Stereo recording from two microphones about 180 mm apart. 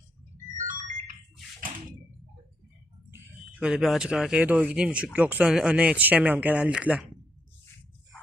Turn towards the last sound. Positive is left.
turn(degrees=-5)  # may be behind; listen again after turning